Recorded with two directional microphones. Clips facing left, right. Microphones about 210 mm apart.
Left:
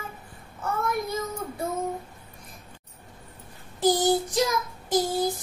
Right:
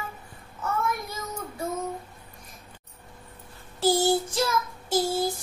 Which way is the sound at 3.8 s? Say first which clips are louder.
Even; 15° left (ahead or behind).